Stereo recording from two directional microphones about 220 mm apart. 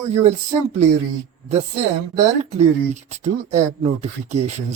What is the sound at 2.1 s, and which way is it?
Speech, 30° right (ahead or behind).